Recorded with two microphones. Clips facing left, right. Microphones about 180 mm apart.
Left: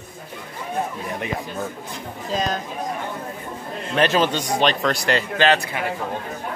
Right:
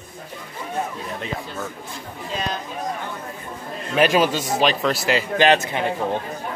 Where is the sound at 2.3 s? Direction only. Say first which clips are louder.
Left 4 dB; 40° left (ahead or behind).